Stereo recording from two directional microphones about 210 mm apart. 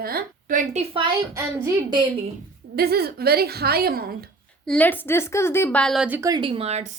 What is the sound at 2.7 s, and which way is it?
A woman's voice, 50° right (ahead or behind).